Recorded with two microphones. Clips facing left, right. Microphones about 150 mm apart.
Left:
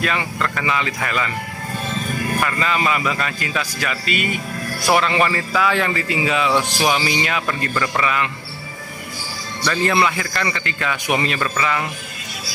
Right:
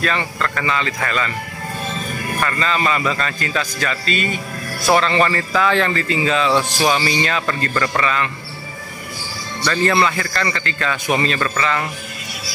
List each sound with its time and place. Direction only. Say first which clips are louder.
0.0 s a man's voice: right 1 dB; 10° left (ahead or behind)
2.4 s a man's voice: right 3 dB; 10° left (ahead or behind)
9.7 s a man's voice: right 1 dB; 10° left (ahead or behind)